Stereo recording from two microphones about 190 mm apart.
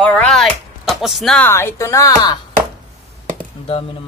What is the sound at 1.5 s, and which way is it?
Speech, 15° left (ahead or behind).